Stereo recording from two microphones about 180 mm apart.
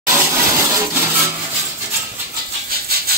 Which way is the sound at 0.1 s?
15° right (ahead or behind).